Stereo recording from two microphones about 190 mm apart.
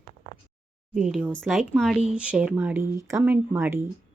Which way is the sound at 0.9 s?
5° right (ahead or behind).